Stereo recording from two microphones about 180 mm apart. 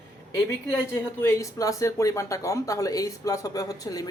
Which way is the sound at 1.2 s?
15° left (ahead or behind).